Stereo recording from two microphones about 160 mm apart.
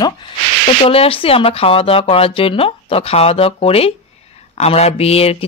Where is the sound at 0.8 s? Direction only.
35° left (ahead or behind).